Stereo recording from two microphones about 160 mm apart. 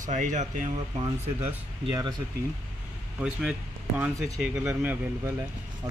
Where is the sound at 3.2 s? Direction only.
5° right (ahead or behind).